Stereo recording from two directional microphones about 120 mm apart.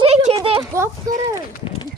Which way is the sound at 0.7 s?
25° right (ahead or behind).